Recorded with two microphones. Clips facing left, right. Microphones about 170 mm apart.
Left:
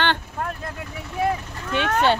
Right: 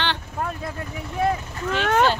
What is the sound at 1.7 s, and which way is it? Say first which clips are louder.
Speech: even; 60° left (ahead or behind).